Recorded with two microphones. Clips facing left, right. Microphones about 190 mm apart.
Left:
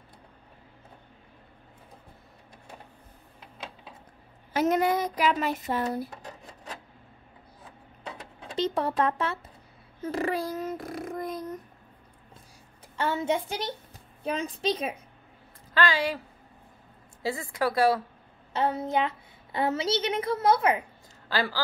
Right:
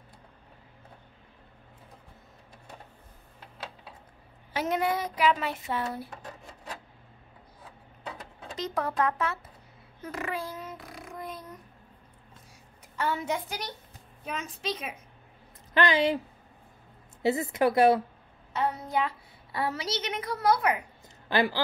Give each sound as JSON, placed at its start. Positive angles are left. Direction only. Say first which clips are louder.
{"t": 4.6, "sound": "speech", "louder": "left 4 dB", "side_deg": 45}
{"t": 8.5, "sound": "a woman's voice", "louder": "left 3 dB", "side_deg": 30}
{"t": 10.0, "sound": "a sound", "louder": "left 6 dB", "side_deg": 35}
{"t": 12.9, "sound": "a woman's voice", "louder": "left 3 dB", "side_deg": 25}
{"t": 15.7, "sound": "a woman's voice", "louder": "right 2 dB", "side_deg": -20}
{"t": 17.2, "sound": "a woman's voice", "louder": "right 4 dB", "side_deg": -20}
{"t": 18.5, "sound": "a woman's voice", "louder": "left 3 dB", "side_deg": 25}
{"t": 21.3, "sound": "speech", "louder": "right 3 dB", "side_deg": -20}